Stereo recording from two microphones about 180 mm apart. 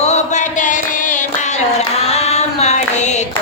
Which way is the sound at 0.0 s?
40° left (ahead or behind).